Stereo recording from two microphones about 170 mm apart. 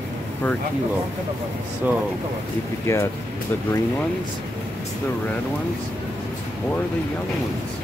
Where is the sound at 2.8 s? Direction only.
15° left (ahead or behind).